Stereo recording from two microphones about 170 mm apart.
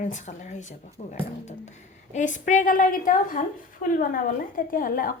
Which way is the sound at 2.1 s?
45° left (ahead or behind).